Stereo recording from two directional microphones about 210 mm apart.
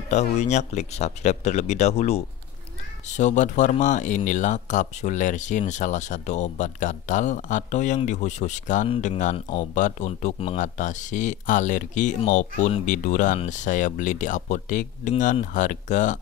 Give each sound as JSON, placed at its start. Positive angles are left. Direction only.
{"t": 0.1, "sound": "speech", "side_deg": 35}